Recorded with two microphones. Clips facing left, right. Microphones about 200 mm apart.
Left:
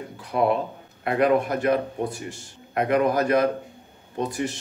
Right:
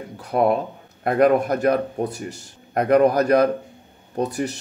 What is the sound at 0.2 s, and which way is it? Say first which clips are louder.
A man's voice: right 3 dB; 40° right (ahead or behind).